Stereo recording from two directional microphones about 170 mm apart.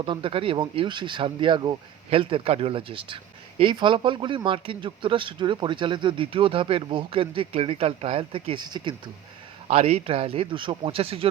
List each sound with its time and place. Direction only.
0.0 s speech: 30° right (ahead or behind)